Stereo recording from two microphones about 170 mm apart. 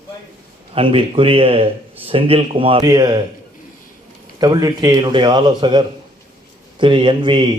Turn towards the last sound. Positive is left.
turn(degrees=-30)  # may be behind; listen again after turning